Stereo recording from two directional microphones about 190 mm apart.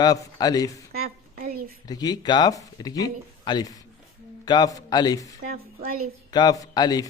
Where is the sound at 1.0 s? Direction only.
50° right (ahead or behind).